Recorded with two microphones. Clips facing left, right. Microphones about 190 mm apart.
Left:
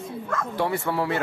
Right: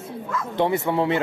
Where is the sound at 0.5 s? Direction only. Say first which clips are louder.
Right 5 dB; 20° right (ahead or behind).